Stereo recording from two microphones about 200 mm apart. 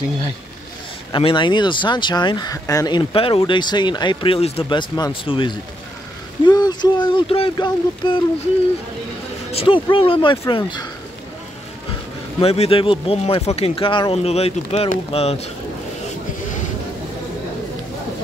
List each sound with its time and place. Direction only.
1.1 s speech: 25° left (ahead or behind)
9.5 s speech: 30° left (ahead or behind)
12.4 s speech: 30° left (ahead or behind)